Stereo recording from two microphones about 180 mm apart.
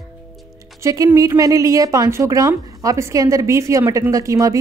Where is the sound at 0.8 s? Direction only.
20° right (ahead or behind).